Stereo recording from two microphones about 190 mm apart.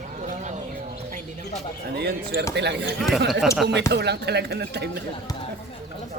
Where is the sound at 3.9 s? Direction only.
60° right (ahead or behind).